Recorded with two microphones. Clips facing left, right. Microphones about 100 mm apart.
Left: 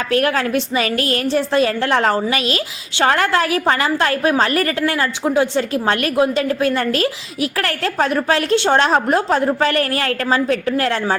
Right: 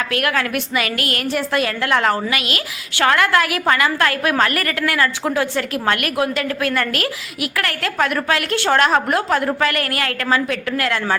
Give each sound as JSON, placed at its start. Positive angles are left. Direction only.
{"t": 0.1, "sound": "a woman's voice", "side_deg": 30}